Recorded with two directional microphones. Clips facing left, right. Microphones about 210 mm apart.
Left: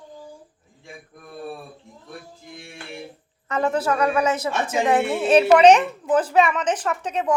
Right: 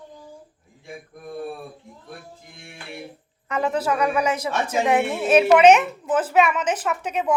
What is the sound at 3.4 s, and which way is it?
A woman's voice, 10° right (ahead or behind).